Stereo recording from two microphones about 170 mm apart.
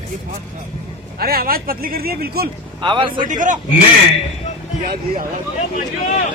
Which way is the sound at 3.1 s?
50° right (ahead or behind).